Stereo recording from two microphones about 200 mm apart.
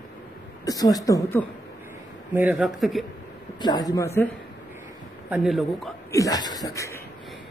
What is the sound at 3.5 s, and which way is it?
Speech, 20° left (ahead or behind).